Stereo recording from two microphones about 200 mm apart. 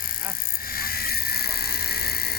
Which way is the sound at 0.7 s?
50° left (ahead or behind).